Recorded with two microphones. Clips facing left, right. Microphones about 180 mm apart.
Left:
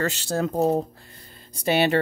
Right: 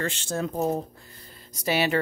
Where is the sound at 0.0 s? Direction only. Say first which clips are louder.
Left 4 dB; 35° left (ahead or behind).